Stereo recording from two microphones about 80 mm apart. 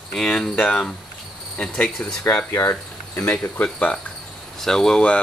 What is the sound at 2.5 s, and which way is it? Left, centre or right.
Speech, left.